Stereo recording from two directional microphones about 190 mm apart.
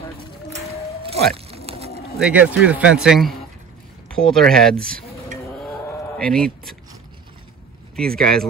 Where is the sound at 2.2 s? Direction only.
5° right (ahead or behind).